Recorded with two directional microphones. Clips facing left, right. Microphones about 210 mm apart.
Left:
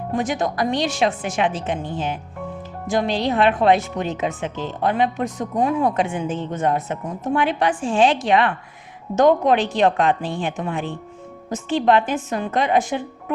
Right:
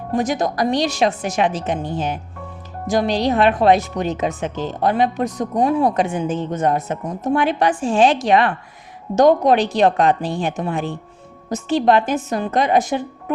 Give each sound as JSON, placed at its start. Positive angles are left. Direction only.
{"t": 0.2, "sound": "speech", "side_deg": -40}